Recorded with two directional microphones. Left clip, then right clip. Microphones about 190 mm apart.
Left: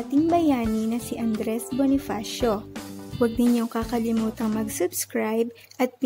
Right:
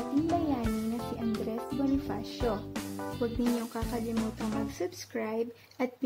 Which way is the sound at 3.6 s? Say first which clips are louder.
Left 9 dB; 40° left (ahead or behind).